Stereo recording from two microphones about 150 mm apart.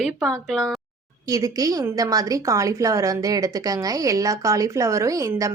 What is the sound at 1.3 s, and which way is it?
A woman's voice, 25° right (ahead or behind).